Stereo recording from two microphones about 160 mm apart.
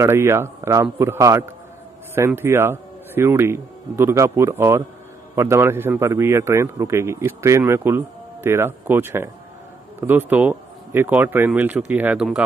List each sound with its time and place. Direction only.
0.0 s a man's voice: 15° right (ahead or behind)